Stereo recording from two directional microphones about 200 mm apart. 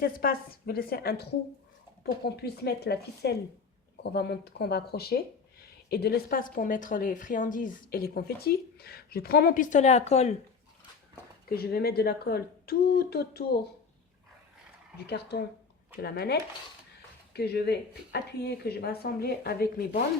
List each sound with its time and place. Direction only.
0.0 s a woman's voice: 50° left (ahead or behind); by 10.3 s 35° left (ahead or behind)
11.4 s speech: 50° left (ahead or behind)
15.0 s a woman's voice: 55° left (ahead or behind)